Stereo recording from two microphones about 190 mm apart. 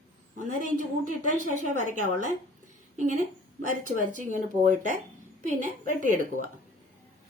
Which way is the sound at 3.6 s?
45° right (ahead or behind).